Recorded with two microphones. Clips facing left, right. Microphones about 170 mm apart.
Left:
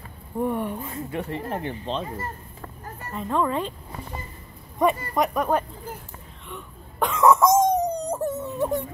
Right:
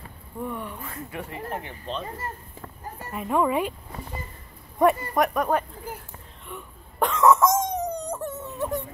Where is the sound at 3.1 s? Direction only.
10° right (ahead or behind).